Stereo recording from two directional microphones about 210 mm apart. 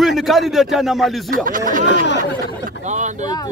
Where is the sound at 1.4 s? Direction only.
40° right (ahead or behind).